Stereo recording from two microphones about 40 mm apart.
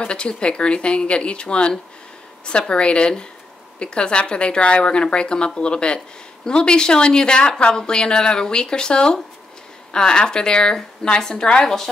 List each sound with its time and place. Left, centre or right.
0.0 s a woman's voice: left
2.7 s a woman's voice: left